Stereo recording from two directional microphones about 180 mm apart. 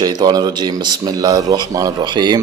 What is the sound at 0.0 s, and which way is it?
Speech, 20° right (ahead or behind).